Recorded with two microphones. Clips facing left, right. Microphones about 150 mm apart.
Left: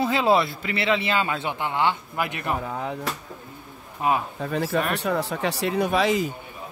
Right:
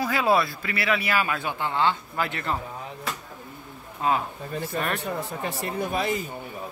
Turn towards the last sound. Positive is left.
turn(degrees=90)